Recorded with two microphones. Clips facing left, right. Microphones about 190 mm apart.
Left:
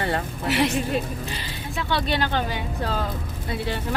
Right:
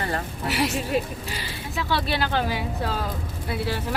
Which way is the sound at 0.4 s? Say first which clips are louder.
Left 3 dB; centre (ahead or behind).